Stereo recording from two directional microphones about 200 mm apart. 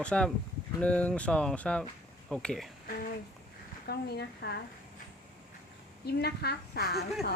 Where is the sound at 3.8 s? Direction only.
55° left (ahead or behind).